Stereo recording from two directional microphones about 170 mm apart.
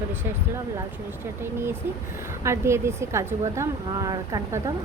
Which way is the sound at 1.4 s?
15° right (ahead or behind).